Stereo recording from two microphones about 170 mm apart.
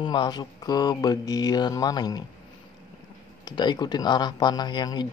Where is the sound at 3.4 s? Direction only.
25° left (ahead or behind).